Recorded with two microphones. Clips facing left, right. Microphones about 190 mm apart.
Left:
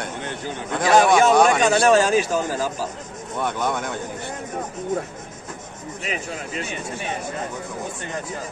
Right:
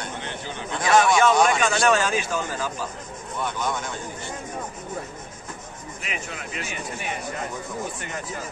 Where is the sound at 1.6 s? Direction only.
35° left (ahead or behind).